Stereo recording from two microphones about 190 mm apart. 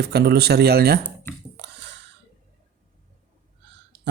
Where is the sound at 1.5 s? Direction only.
65° right (ahead or behind).